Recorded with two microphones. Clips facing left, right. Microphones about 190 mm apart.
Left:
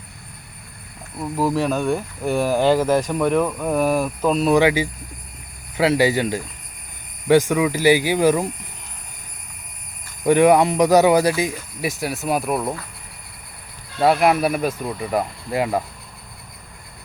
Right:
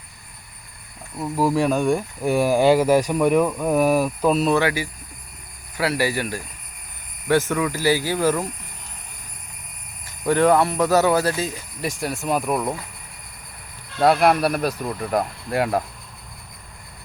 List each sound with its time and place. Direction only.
1.2 s speech: 10° right (ahead or behind)
4.4 s speech: 15° left (ahead or behind)
10.2 s speech: 15° left (ahead or behind)
14.0 s speech: centre (ahead or behind)